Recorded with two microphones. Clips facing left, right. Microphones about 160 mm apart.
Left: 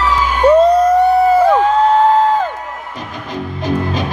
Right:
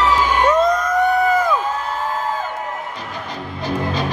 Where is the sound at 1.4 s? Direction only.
70° left (ahead or behind).